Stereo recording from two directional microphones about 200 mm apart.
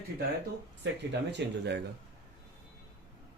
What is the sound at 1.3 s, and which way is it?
Speech, 60° right (ahead or behind).